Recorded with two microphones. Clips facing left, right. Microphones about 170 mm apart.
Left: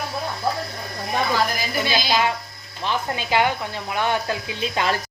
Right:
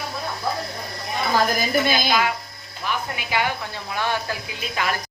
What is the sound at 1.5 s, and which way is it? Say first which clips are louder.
Speech: right 3 dB; 50° right (ahead or behind).